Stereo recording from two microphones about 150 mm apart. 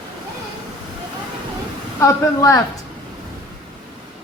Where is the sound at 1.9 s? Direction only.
20° left (ahead or behind).